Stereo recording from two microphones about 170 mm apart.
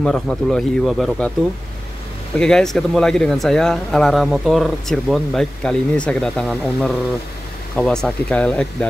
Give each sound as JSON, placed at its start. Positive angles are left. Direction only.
{"t": 0.0, "sound": "speech", "side_deg": 0}
{"t": 2.3, "sound": "speech", "side_deg": 5}